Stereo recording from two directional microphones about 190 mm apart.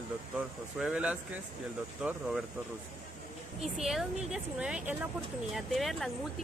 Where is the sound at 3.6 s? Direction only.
Centre (ahead or behind).